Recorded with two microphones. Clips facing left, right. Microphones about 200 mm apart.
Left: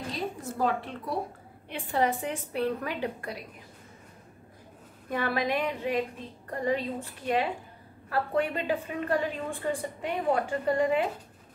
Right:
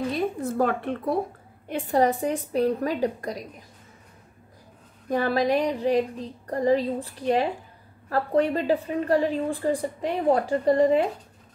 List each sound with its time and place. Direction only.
0.1 s a woman's voice: 55° right (ahead or behind)
1.7 s a woman's voice: 40° right (ahead or behind)
5.1 s a woman's voice: 40° right (ahead or behind)